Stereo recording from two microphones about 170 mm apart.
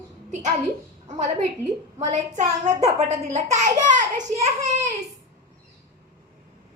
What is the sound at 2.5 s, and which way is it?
Speech, 20° right (ahead or behind).